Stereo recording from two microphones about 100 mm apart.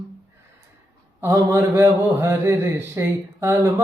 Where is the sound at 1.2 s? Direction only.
35° right (ahead or behind).